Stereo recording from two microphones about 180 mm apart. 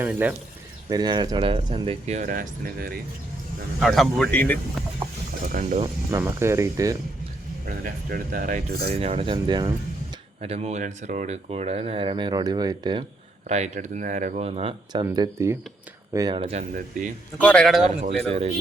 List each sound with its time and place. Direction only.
0.0 s speech: 10° right (ahead or behind)
0.9 s speech: 25° right (ahead or behind); by 3.0 s 55° right (ahead or behind)
3.8 s speech: centre (ahead or behind)
5.5 s speech: 45° right (ahead or behind)
5.8 s speech: 15° right (ahead or behind)
7.9 s speech: 50° right (ahead or behind)
8.8 s speech: 35° right (ahead or behind)
10.4 s speech: 35° right (ahead or behind)
13.5 s speech: 40° right (ahead or behind)
15.0 s speech: 20° right (ahead or behind)
17.3 s speech: 5° left (ahead or behind)
18.3 s speech: 35° right (ahead or behind)